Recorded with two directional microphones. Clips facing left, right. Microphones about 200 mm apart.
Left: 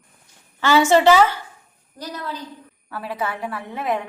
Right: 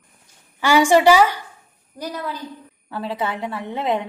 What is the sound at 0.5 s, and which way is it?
Speech, 15° right (ahead or behind).